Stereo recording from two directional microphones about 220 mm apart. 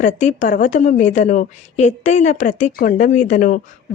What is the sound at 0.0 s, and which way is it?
A woman's voice, 35° left (ahead or behind).